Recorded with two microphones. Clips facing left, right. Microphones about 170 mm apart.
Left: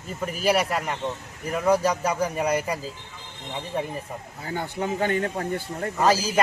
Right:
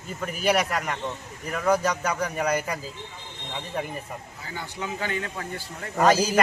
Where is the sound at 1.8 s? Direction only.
30° left (ahead or behind).